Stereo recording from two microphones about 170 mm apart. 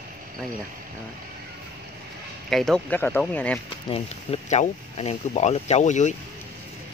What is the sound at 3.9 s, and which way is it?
Speech, 35° left (ahead or behind).